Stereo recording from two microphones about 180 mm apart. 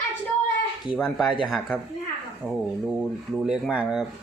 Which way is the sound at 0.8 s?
5° right (ahead or behind).